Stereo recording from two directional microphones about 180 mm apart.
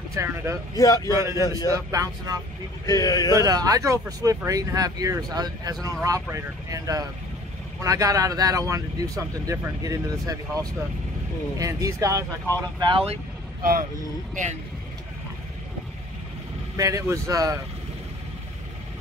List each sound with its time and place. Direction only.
0.1 s speech: 15° right (ahead or behind)
0.7 s a man's voice: 20° left (ahead or behind)
1.1 s speech: 15° right (ahead or behind)
2.9 s a man's voice: 20° left (ahead or behind)
3.3 s speech: 20° right (ahead or behind)
11.5 s speech: 20° right (ahead or behind)
13.6 s speech: 50° right (ahead or behind)
14.3 s speech: 40° right (ahead or behind)
16.7 s speech: 20° right (ahead or behind)